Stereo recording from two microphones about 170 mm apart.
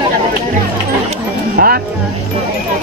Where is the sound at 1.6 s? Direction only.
65° right (ahead or behind).